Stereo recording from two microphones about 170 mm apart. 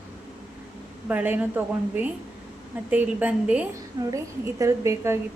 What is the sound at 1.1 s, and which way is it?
A woman's voice, 10° right (ahead or behind).